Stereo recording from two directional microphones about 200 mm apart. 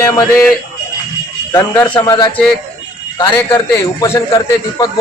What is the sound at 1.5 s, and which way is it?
A man's voice, 10° left (ahead or behind).